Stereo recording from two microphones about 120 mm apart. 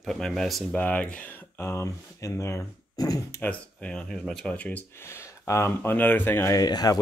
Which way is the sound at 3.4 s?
10° left (ahead or behind).